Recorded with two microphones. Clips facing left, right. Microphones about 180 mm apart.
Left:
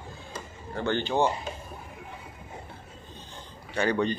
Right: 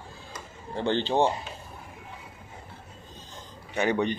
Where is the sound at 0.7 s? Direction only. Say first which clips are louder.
Right 2 dB; 25° right (ahead or behind).